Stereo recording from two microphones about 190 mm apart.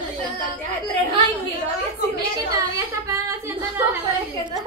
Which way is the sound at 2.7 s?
15° right (ahead or behind).